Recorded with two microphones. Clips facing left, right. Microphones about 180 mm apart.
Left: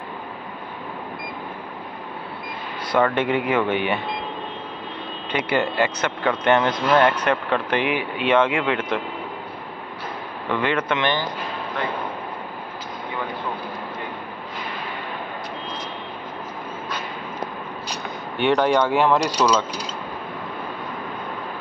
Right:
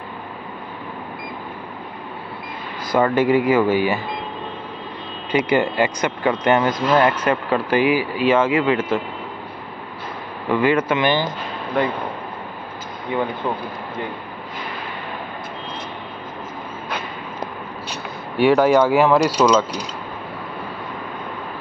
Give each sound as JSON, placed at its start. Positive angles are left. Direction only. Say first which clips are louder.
{"t": 2.9, "sound": "speech", "louder": "right 4 dB", "side_deg": -5}
{"t": 5.3, "sound": "speech", "louder": "right 4 dB", "side_deg": -10}
{"t": 10.5, "sound": "speech", "louder": "right 5 dB", "side_deg": -10}
{"t": 18.4, "sound": "speech", "louder": "right 4 dB", "side_deg": -5}